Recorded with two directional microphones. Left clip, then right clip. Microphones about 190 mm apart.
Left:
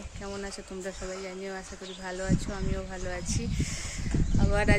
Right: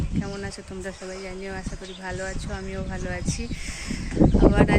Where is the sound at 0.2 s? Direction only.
10° left (ahead or behind).